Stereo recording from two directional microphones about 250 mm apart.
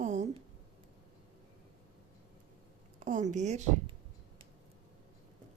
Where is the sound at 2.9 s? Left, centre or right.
Right.